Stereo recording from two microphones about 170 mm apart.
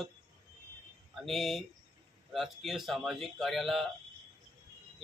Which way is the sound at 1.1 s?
Centre (ahead or behind).